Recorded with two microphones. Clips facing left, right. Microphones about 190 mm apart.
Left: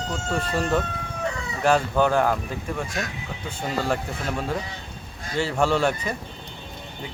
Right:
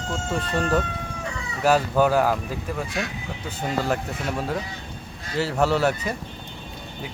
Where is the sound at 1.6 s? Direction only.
5° right (ahead or behind).